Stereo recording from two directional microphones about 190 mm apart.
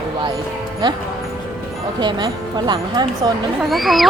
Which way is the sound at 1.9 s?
25° right (ahead or behind).